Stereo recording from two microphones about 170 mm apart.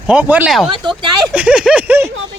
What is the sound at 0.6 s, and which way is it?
Speech, 30° right (ahead or behind).